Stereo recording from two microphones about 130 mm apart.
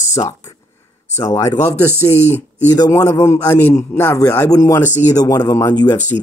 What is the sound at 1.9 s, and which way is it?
Speech, 20° right (ahead or behind).